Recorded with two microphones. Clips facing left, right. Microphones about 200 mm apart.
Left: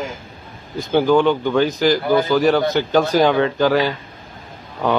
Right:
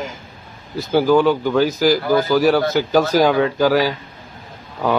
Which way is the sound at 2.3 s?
5° right (ahead or behind).